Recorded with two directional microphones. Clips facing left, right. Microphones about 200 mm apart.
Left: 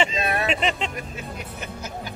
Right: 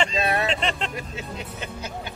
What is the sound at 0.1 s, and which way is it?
Music, 30° right (ahead or behind).